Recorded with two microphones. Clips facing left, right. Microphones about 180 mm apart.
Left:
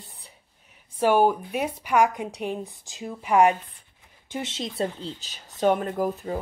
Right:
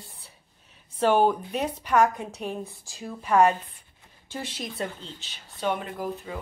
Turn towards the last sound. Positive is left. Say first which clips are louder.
# left 6 dB
turn(degrees=45)  # may be behind; listen again after turning